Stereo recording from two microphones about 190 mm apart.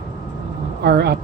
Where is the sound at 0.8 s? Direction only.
55° right (ahead or behind).